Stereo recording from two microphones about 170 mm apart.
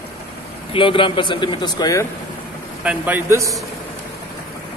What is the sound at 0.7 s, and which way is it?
A man's voice, 30° left (ahead or behind).